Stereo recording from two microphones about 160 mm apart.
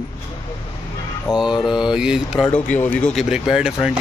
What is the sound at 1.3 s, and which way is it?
Speech, 5° right (ahead or behind).